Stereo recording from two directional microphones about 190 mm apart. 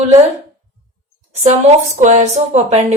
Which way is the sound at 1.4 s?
35° right (ahead or behind).